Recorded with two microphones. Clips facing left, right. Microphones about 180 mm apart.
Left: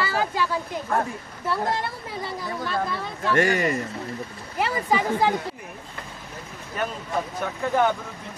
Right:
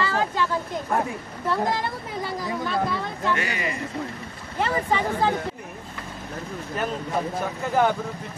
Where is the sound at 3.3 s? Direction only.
45° left (ahead or behind).